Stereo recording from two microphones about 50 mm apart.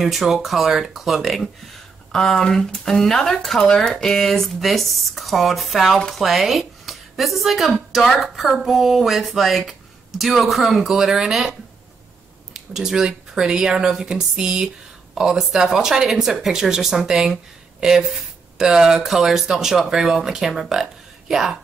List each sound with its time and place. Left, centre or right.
0.0 s speech: centre
2.1 s speech: centre
12.5 s speech: centre